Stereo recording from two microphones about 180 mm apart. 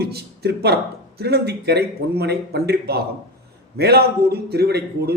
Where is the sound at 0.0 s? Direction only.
65° right (ahead or behind).